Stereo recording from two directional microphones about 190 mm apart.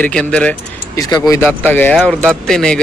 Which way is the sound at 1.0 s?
15° left (ahead or behind).